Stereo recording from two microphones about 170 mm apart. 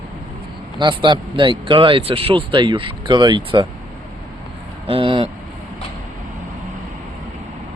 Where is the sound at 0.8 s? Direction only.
25° right (ahead or behind).